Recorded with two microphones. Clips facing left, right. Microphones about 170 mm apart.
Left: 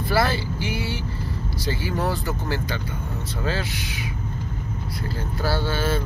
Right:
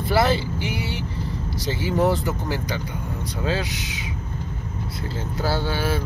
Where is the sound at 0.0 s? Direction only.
20° right (ahead or behind).